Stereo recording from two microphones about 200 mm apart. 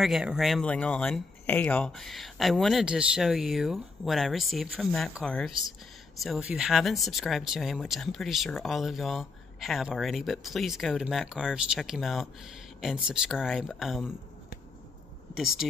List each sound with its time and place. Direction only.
0.0 s speech: centre (ahead or behind)
15.3 s speech: 5° right (ahead or behind)